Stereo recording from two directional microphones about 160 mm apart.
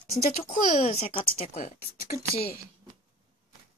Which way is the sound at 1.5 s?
55° left (ahead or behind).